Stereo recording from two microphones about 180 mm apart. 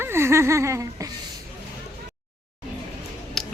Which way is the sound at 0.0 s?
15° right (ahead or behind).